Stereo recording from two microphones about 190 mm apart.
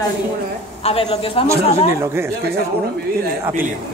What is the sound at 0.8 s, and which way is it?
Speech, 30° left (ahead or behind).